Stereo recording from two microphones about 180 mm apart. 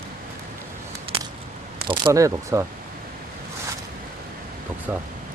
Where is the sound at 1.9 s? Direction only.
20° right (ahead or behind).